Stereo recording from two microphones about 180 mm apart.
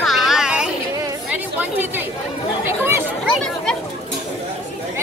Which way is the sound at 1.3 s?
10° right (ahead or behind).